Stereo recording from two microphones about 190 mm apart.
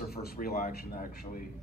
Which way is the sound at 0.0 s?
50° left (ahead or behind).